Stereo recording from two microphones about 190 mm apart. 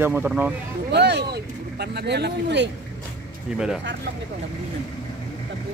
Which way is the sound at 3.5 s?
5° right (ahead or behind).